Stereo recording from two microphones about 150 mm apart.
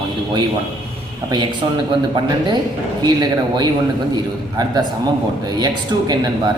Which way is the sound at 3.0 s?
25° right (ahead or behind).